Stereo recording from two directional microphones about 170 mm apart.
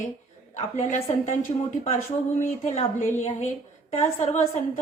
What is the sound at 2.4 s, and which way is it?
A woman's voice, 50° left (ahead or behind).